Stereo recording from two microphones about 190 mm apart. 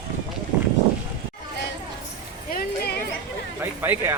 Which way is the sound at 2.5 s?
55° left (ahead or behind).